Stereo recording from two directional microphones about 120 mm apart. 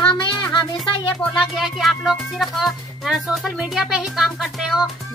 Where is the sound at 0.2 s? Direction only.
40° left (ahead or behind).